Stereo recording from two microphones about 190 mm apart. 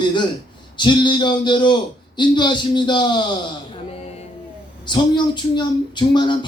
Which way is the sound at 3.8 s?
35° left (ahead or behind).